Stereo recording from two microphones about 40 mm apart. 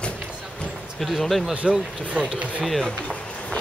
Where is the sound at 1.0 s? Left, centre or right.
Centre.